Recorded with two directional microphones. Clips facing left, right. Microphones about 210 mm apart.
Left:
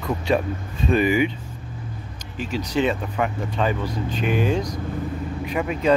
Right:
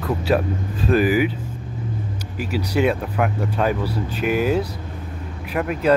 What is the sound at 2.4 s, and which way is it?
Speech, 10° right (ahead or behind).